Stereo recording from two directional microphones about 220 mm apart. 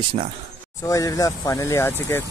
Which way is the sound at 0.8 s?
15° left (ahead or behind).